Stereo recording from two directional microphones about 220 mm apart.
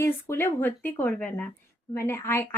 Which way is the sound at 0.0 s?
10° left (ahead or behind).